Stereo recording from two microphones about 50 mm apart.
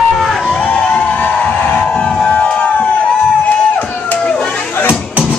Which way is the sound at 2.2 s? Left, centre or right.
Left.